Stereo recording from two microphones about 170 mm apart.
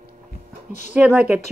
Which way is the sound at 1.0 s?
5° right (ahead or behind).